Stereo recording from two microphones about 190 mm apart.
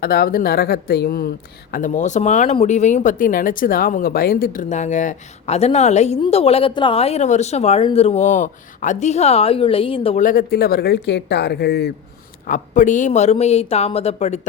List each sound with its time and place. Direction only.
0.0 s speech: 55° left (ahead or behind)
1.7 s speech: 40° left (ahead or behind)
10.2 s speech: 50° left (ahead or behind)
12.5 s speech: 40° left (ahead or behind)